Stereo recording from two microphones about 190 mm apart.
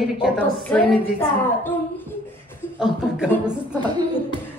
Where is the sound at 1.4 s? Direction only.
10° left (ahead or behind).